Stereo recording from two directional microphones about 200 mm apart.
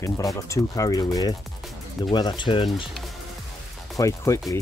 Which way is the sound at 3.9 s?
15° left (ahead or behind).